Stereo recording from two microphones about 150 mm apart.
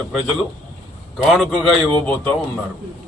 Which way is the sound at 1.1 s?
Centre (ahead or behind).